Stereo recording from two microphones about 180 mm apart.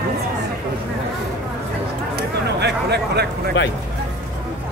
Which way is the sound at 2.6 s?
65° right (ahead or behind).